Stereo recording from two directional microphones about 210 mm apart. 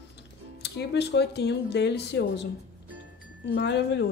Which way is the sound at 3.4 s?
60° left (ahead or behind).